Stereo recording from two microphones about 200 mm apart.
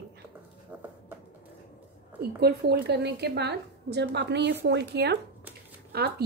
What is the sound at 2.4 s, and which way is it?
A woman's voice, 55° right (ahead or behind).